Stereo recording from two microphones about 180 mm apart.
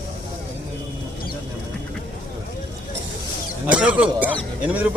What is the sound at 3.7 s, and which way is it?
Speech, 5° right (ahead or behind).